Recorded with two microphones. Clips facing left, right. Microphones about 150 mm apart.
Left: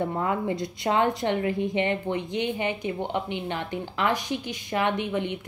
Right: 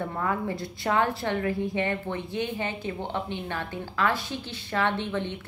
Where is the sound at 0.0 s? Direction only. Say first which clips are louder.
Left 3 dB; 20° left (ahead or behind).